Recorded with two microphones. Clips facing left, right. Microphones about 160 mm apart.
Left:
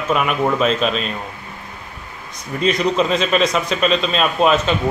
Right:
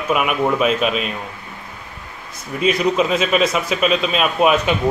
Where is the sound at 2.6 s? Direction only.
5° right (ahead or behind).